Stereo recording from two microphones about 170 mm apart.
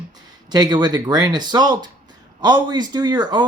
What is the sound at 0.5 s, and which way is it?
Speech, 25° right (ahead or behind).